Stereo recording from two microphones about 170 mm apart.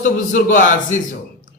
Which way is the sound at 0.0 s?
50° left (ahead or behind).